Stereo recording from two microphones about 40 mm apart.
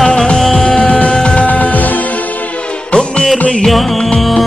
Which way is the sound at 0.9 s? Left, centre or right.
Left.